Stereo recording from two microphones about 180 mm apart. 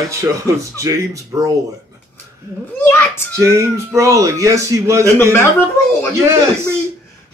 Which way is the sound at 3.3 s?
15° right (ahead or behind).